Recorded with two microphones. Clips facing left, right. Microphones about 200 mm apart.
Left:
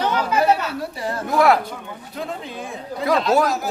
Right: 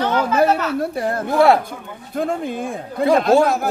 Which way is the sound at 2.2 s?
50° right (ahead or behind).